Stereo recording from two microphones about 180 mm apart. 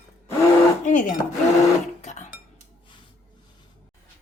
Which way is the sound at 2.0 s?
40° left (ahead or behind).